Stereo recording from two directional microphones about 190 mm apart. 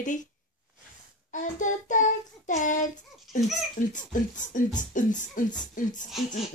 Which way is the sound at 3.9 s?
45° left (ahead or behind).